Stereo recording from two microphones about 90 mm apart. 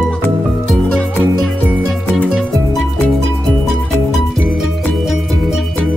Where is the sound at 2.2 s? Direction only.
5° right (ahead or behind).